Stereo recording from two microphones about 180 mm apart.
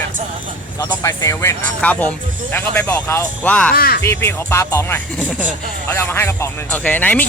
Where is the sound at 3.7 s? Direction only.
55° left (ahead or behind).